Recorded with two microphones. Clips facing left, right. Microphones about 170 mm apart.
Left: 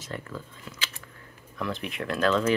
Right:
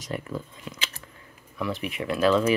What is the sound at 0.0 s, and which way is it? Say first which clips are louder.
Speech: right 5 dB; 15° right (ahead or behind).